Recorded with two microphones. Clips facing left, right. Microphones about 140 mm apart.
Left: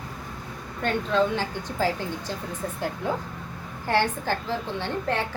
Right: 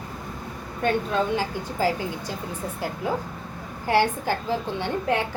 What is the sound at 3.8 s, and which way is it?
A woman's voice, 10° right (ahead or behind).